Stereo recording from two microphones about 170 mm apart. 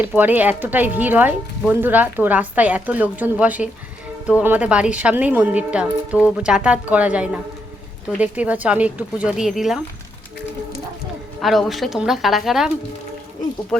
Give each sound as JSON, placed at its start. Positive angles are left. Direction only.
{"t": 0.0, "sound": "speech", "side_deg": -10}
{"t": 11.3, "sound": "speech", "side_deg": 0}